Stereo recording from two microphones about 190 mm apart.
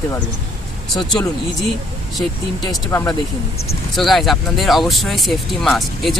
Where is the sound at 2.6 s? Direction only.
15° left (ahead or behind).